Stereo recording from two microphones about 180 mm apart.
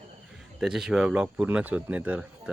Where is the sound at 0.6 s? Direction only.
Centre (ahead or behind).